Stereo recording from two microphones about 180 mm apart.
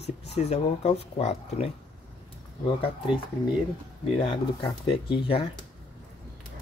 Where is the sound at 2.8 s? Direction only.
30° left (ahead or behind).